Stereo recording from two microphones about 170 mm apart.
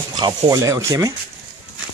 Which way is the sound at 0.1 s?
25° right (ahead or behind).